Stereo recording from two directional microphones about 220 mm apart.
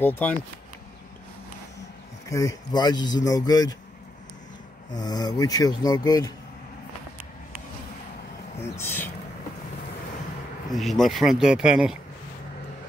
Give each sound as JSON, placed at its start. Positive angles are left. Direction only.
{"t": 0.0, "sound": "speech", "side_deg": 10}
{"t": 2.2, "sound": "speech", "side_deg": 15}
{"t": 4.9, "sound": "speech", "side_deg": 15}
{"t": 8.7, "sound": "speech", "side_deg": 10}
{"t": 10.7, "sound": "speech", "side_deg": 0}